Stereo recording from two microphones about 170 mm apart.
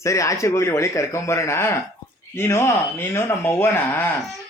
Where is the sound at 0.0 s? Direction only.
20° left (ahead or behind).